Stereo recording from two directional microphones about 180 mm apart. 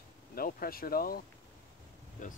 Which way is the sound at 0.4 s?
55° left (ahead or behind).